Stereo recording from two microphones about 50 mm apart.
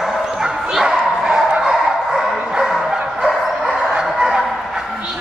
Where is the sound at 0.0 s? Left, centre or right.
Centre.